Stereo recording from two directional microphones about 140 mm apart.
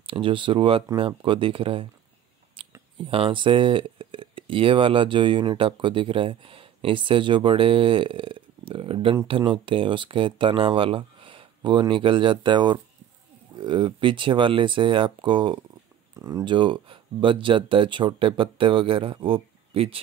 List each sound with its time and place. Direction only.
0.0 s speech: 40° right (ahead or behind)
2.6 s a sound: 40° right (ahead or behind)
3.1 s speech: 40° right (ahead or behind)
16.2 s speech: 25° right (ahead or behind); by 20.0 s 45° right (ahead or behind)